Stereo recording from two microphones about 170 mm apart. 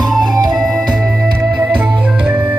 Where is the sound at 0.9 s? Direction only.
5° right (ahead or behind).